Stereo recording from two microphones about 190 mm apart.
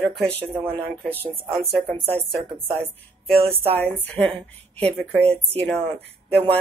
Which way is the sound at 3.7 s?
10° left (ahead or behind).